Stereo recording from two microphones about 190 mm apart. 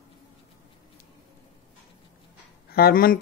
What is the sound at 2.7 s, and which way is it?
Speech, 55° left (ahead or behind).